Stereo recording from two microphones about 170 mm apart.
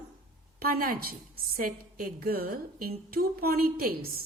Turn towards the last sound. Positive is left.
turn(degrees=-55)  # may be behind; listen again after turning